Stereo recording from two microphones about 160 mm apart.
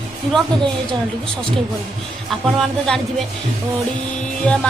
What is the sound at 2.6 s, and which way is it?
Speech, 5° left (ahead or behind).